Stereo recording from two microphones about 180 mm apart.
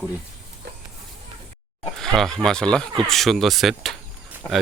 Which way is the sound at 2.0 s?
Centre (ahead or behind).